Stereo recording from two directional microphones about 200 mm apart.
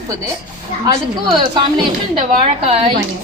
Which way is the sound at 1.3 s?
25° right (ahead or behind).